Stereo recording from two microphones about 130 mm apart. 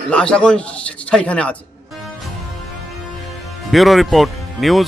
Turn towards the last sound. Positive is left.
turn(degrees=0)  # may be behind; listen again after turning